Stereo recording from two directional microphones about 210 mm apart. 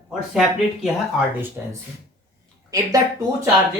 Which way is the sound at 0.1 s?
5° right (ahead or behind).